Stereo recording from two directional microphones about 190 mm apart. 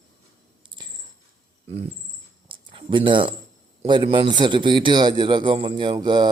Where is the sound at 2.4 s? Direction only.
25° right (ahead or behind).